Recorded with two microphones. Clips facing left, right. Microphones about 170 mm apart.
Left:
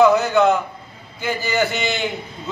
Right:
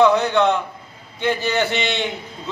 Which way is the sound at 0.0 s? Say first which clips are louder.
Left 1 dB; 5° left (ahead or behind).